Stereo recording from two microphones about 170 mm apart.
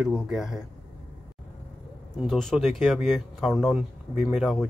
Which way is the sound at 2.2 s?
Centre (ahead or behind).